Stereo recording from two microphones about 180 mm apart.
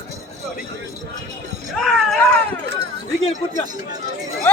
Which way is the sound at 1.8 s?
Centre (ahead or behind).